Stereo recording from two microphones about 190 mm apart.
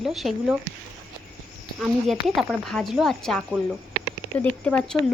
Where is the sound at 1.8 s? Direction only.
Centre (ahead or behind).